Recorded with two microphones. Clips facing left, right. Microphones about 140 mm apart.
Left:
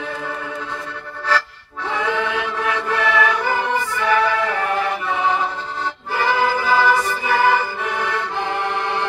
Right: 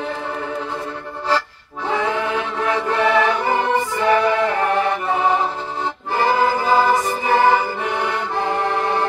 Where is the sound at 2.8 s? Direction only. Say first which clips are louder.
Right 2 dB; 25° right (ahead or behind).